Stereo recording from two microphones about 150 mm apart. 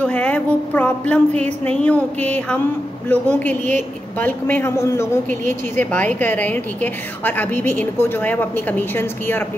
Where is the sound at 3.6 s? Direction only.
55° right (ahead or behind).